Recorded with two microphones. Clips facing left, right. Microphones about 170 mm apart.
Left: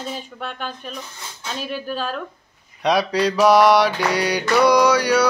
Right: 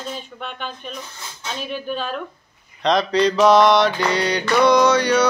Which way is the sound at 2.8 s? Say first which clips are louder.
Right 1 dB; 10° left (ahead or behind).